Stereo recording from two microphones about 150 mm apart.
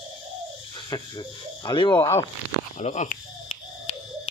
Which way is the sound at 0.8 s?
25° left (ahead or behind).